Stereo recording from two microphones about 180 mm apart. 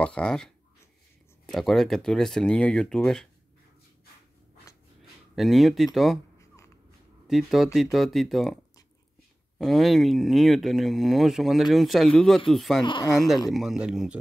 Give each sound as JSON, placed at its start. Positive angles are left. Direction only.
{"t": 0.0, "sound": "speech", "side_deg": 5}
{"t": 5.3, "sound": "speech", "side_deg": 0}
{"t": 7.2, "sound": "speech", "side_deg": 0}
{"t": 9.6, "sound": "speech", "side_deg": 0}
{"t": 12.8, "sound": "speech", "side_deg": 25}
{"t": 13.5, "sound": "speech", "side_deg": 0}